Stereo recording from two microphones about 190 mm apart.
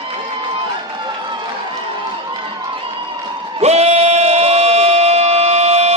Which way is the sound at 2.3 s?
25° right (ahead or behind).